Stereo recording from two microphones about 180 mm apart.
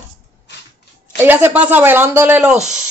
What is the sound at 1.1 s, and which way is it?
A woman's voice, 10° right (ahead or behind).